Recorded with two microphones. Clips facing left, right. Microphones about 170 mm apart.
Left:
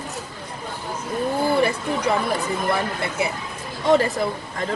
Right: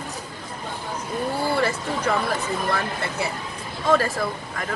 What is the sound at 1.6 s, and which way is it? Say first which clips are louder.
Speech: left 3 dB; 15° left (ahead or behind).